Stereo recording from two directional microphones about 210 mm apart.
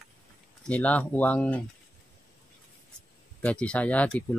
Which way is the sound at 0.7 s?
5° left (ahead or behind).